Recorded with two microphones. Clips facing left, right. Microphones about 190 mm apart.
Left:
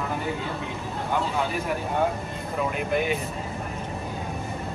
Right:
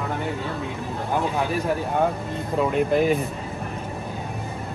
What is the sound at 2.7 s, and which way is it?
Speech, 35° right (ahead or behind).